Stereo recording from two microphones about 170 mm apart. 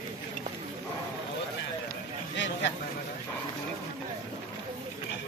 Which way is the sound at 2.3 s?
90° left.